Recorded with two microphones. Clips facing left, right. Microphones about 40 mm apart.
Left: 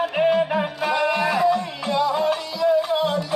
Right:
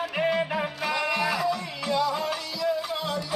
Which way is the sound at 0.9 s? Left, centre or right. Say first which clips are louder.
Left 5 dB; left.